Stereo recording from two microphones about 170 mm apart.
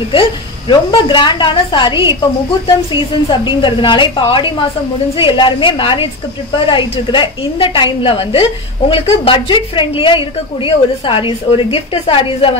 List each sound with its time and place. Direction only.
0.1 s a woman's voice: 30° left (ahead or behind)